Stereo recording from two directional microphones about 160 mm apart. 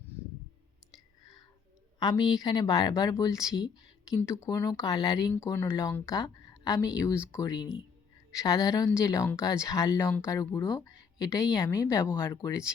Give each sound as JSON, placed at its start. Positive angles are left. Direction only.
{"t": 2.0, "sound": "speech", "side_deg": 25}